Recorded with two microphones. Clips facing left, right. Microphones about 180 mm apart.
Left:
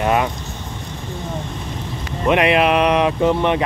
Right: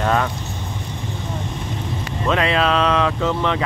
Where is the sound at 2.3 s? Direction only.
15° left (ahead or behind).